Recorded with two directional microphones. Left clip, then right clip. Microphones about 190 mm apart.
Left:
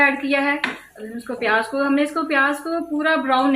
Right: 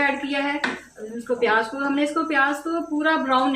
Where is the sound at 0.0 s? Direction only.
50° left (ahead or behind).